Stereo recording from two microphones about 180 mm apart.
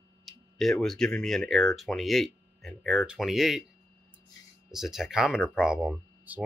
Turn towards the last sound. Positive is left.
turn(degrees=-10)  # may be behind; listen again after turning